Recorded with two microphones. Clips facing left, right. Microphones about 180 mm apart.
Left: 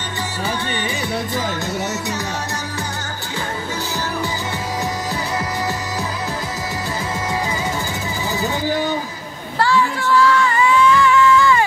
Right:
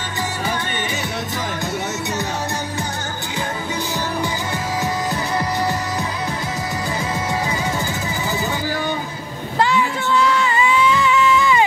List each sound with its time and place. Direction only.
9.6 s music: 20° right (ahead or behind)